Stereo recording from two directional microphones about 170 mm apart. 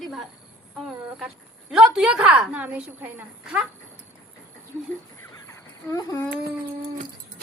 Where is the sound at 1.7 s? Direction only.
5° right (ahead or behind).